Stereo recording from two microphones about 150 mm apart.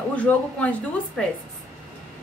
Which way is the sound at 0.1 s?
10° left (ahead or behind).